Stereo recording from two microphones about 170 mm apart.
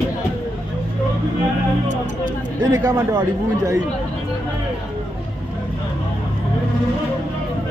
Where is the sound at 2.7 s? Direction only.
15° right (ahead or behind).